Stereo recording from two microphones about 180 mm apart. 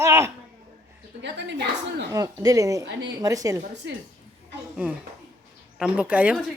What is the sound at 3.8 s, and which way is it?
Speech, 75° right (ahead or behind).